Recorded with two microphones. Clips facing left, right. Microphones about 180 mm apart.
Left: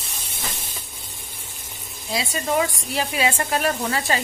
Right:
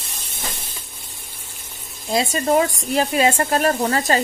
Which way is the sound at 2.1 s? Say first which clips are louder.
Right 6 dB; 45° right (ahead or behind).